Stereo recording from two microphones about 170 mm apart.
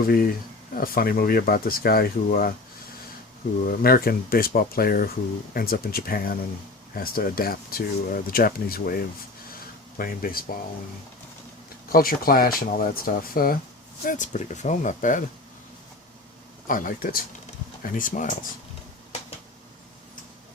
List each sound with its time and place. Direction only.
0.1 s speech: 60° left (ahead or behind)
3.6 s speech: 55° left (ahead or behind)
11.9 s speech: 60° left (ahead or behind)
16.6 s speech: 55° left (ahead or behind)